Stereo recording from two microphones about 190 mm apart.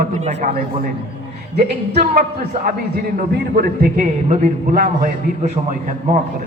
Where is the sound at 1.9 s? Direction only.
55° right (ahead or behind); by 6.2 s 40° right (ahead or behind).